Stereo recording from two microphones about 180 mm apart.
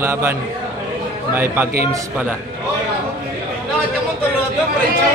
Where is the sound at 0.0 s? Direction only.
15° right (ahead or behind).